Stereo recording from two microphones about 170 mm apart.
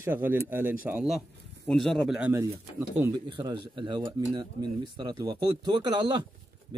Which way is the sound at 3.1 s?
25° right (ahead or behind).